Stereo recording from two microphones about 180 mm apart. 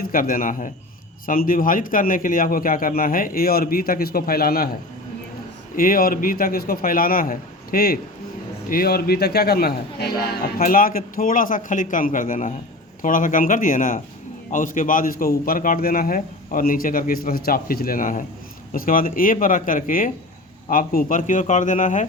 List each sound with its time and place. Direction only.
0.0 s a man's voice: 50° left (ahead or behind)
5.7 s a man's voice: 50° left (ahead or behind)